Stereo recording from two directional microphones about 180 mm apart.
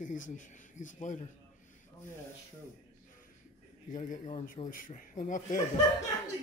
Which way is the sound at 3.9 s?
45° left (ahead or behind).